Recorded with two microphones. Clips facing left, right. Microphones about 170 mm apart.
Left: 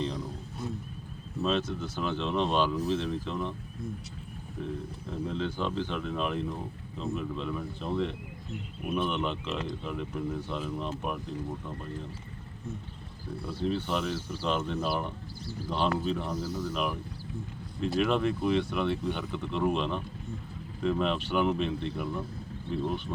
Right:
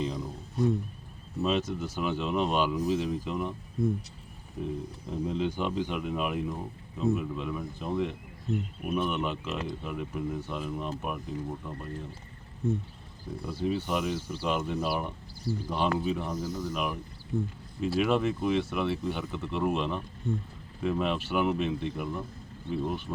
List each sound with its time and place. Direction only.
0.0 s a sound: 5° right (ahead or behind)
1.4 s speech: 10° right (ahead or behind)
4.6 s speech: 15° right (ahead or behind)
13.4 s speech: 5° right (ahead or behind)
16.3 s speech: 20° right (ahead or behind)
16.7 s speech: centre (ahead or behind)